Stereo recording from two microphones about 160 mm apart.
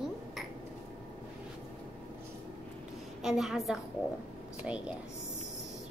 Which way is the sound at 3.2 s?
Centre (ahead or behind).